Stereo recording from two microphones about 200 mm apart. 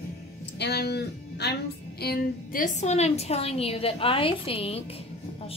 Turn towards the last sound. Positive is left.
turn(degrees=30)  # may be behind; listen again after turning